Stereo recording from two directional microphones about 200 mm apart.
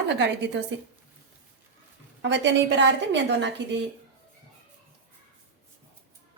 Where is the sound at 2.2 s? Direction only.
65° right (ahead or behind).